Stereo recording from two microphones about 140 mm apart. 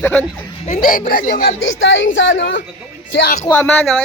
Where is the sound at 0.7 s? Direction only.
75° left (ahead or behind).